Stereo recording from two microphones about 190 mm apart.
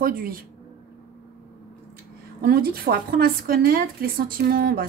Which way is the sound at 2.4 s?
55° right (ahead or behind).